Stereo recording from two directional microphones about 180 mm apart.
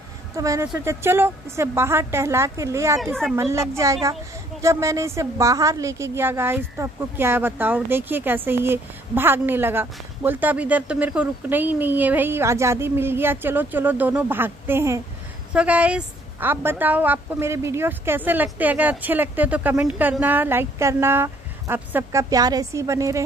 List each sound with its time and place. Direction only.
0.4 s speech: 20° right (ahead or behind)